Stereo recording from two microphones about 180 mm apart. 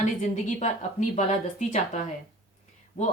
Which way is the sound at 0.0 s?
40° left (ahead or behind).